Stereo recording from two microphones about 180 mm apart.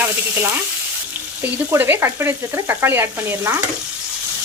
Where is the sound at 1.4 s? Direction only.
10° right (ahead or behind).